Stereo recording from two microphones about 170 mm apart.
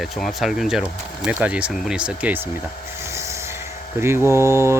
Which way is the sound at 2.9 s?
15° right (ahead or behind).